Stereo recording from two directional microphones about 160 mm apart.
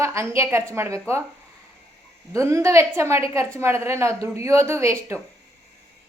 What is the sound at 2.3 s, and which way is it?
A woman's voice, 20° right (ahead or behind).